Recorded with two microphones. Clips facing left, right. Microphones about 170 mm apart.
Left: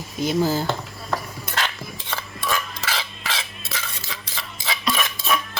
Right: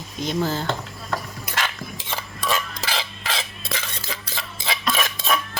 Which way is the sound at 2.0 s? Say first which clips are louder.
Right 1 dB; 25° right (ahead or behind).